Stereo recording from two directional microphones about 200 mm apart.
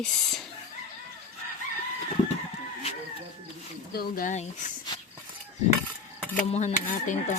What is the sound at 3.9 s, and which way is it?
Speech, 45° left (ahead or behind).